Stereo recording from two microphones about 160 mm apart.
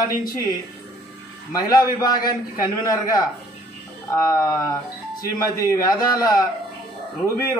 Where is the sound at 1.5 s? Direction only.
20° left (ahead or behind).